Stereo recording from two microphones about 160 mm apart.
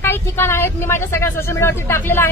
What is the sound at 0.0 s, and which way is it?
A woman's voice, 15° left (ahead or behind).